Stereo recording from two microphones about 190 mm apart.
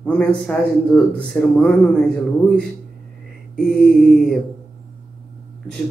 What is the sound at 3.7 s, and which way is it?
Speech, centre (ahead or behind).